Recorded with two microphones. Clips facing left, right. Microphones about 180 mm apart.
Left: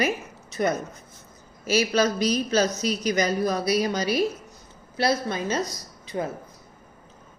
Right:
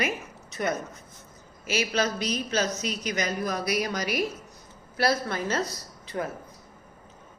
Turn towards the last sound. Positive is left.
turn(degrees=20)  # may be behind; listen again after turning